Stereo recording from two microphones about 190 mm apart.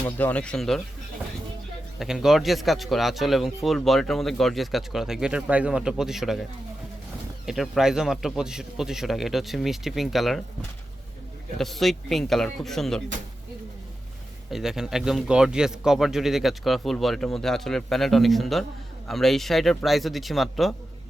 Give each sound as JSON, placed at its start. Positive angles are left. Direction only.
{"t": 0.0, "sound": "speech", "side_deg": 10}
{"t": 2.0, "sound": "speech", "side_deg": -5}
{"t": 7.4, "sound": "speech", "side_deg": 0}
{"t": 11.5, "sound": "speech", "side_deg": 0}
{"t": 14.5, "sound": "speech", "side_deg": 0}